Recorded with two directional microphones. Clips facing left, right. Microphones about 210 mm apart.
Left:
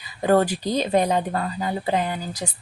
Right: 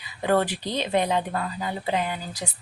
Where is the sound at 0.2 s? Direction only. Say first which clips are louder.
Left 4 dB; 40° left (ahead or behind).